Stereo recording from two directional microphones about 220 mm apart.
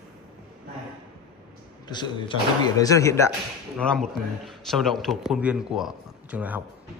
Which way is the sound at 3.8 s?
5° left (ahead or behind).